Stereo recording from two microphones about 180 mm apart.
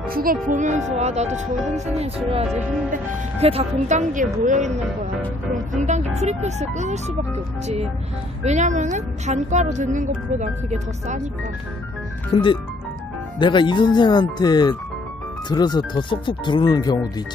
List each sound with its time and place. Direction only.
0.1 s speech: 50° right (ahead or behind)
12.3 s speech: 30° left (ahead or behind)